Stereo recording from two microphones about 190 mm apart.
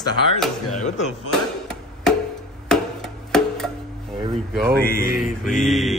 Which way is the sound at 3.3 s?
5° left (ahead or behind).